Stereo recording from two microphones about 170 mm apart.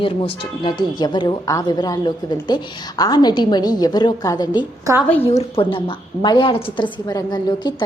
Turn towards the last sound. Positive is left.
turn(degrees=25)  # may be behind; listen again after turning